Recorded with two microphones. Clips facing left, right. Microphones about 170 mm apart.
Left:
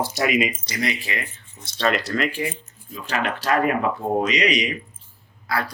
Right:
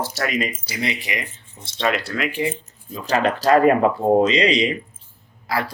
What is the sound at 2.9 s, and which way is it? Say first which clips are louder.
Speech: right 6 dB; 35° right (ahead or behind).